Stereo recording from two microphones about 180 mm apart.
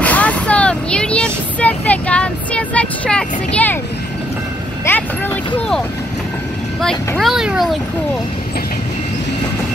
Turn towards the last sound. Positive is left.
turn(degrees=0)  # may be behind; listen again after turning